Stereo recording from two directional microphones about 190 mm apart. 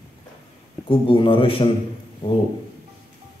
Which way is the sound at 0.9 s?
30° left (ahead or behind).